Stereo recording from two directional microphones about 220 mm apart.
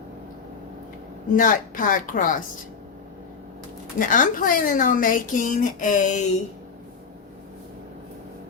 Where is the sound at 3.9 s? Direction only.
35° left (ahead or behind).